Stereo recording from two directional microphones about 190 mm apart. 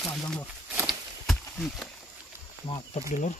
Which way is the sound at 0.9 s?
Centre (ahead or behind).